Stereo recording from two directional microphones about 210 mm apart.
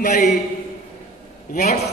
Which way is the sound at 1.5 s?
35° left (ahead or behind).